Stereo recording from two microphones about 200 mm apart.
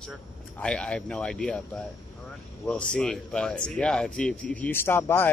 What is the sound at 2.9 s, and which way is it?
Speech, 5° left (ahead or behind).